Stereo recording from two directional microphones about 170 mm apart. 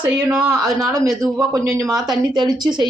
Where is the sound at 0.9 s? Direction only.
20° right (ahead or behind).